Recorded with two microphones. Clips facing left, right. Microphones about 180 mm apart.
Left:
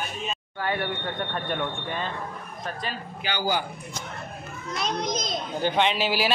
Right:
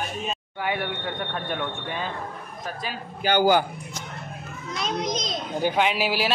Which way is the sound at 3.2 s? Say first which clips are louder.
Right 8 dB; 55° right (ahead or behind).